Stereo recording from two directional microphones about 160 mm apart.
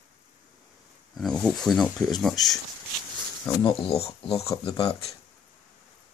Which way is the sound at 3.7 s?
40° left (ahead or behind).